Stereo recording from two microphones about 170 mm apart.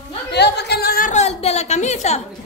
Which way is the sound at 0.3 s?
80° left.